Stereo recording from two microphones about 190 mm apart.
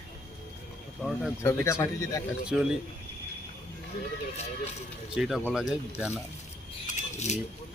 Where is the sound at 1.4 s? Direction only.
15° left (ahead or behind).